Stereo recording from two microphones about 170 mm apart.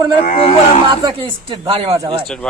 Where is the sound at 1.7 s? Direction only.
35° right (ahead or behind).